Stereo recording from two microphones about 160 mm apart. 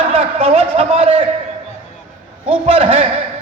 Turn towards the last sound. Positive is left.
turn(degrees=-40)  # may be behind; listen again after turning